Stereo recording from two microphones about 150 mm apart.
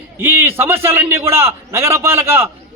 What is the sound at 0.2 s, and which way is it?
A man's voice, 15° right (ahead or behind).